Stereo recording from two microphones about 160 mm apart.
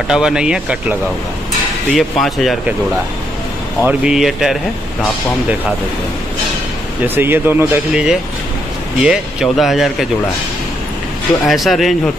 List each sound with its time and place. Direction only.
0.1 s speech: 5° right (ahead or behind)
2.0 s speech: centre (ahead or behind)
3.8 s speech: 5° right (ahead or behind)
7.2 s speech: 15° right (ahead or behind)
11.4 s speech: centre (ahead or behind)